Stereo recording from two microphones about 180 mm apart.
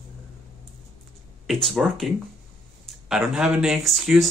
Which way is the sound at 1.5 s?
Centre (ahead or behind).